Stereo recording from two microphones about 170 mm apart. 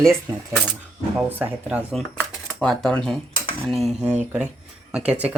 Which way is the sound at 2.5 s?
Centre (ahead or behind).